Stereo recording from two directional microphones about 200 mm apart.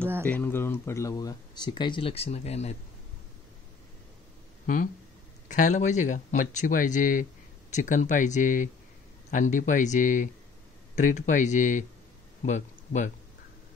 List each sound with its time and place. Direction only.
0.2 s speech: 10° left (ahead or behind); by 2.7 s 30° left (ahead or behind)
5.5 s speech: 40° left (ahead or behind)